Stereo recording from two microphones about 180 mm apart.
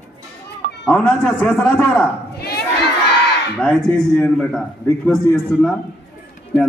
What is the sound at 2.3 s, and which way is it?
Crowd, 65° left (ahead or behind).